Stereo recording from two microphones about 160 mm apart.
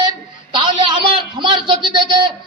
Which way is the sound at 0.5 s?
30° right (ahead or behind).